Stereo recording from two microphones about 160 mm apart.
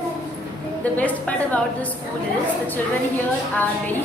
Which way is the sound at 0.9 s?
10° left (ahead or behind).